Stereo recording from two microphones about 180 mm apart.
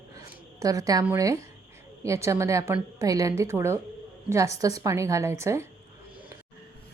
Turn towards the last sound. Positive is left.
turn(degrees=-15)  # may be behind; listen again after turning